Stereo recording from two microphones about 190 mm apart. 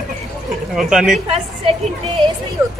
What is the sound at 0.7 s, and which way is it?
Speech, centre (ahead or behind).